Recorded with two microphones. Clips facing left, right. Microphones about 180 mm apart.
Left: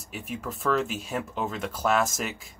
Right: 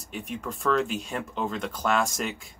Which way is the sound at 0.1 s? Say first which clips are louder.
Right 1 dB; 5° left (ahead or behind).